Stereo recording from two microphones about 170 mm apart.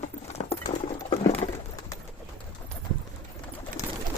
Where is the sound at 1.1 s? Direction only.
40° left (ahead or behind).